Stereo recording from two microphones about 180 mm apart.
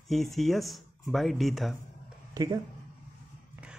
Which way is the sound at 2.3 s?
20° right (ahead or behind).